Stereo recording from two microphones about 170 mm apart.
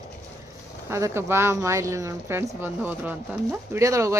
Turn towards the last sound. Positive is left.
turn(degrees=-20)  # may be behind; listen again after turning